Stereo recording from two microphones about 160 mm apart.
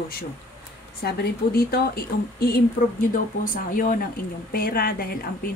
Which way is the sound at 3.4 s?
60° left (ahead or behind).